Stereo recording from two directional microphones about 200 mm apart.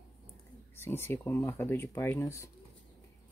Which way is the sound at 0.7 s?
10° left (ahead or behind).